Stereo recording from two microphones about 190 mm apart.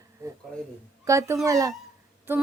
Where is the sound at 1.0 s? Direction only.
15° right (ahead or behind).